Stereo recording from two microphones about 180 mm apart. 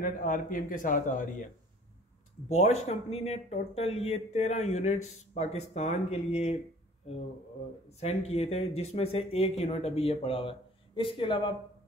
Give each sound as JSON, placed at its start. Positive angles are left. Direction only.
{"t": 0.0, "sound": "a man's voice", "side_deg": 50}
{"t": 2.4, "sound": "speech", "side_deg": 35}
{"t": 8.0, "sound": "speech", "side_deg": 35}